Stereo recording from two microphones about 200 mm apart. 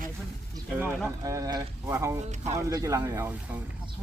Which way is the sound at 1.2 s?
15° right (ahead or behind).